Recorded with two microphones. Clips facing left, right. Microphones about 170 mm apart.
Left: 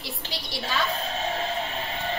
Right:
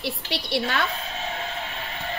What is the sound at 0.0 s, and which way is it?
Speech, 65° right (ahead or behind).